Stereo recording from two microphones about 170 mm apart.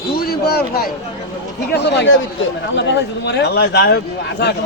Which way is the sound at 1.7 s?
90° left.